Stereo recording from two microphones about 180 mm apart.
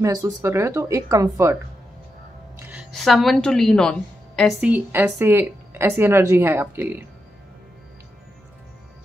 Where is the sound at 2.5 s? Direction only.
10° right (ahead or behind).